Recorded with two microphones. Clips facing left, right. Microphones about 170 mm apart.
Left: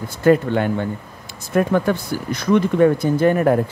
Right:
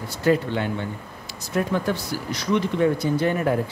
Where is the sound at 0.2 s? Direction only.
50° left (ahead or behind).